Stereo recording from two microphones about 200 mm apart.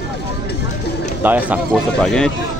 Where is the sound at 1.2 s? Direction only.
10° right (ahead or behind).